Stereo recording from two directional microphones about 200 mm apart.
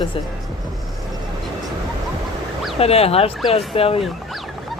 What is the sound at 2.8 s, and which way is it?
Speech, 30° left (ahead or behind).